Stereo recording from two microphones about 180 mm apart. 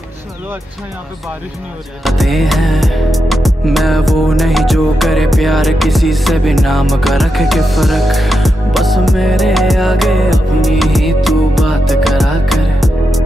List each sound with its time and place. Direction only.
2.0 s music: centre (ahead or behind)